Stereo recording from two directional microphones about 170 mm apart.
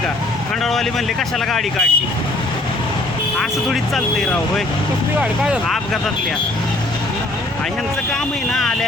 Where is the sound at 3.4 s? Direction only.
Centre (ahead or behind).